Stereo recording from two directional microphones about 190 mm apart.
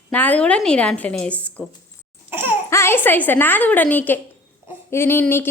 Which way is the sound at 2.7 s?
15° left (ahead or behind).